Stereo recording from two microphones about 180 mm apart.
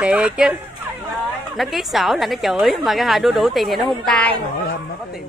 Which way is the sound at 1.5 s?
Centre (ahead or behind).